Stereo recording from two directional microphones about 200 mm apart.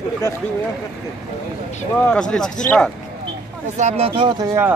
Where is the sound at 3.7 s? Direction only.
35° right (ahead or behind).